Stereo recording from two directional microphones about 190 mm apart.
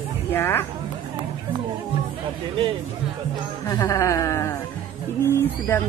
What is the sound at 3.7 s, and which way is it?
Speech, 15° left (ahead or behind).